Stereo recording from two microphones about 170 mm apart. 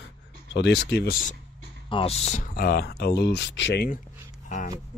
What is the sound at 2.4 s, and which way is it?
Speech, 60° left (ahead or behind).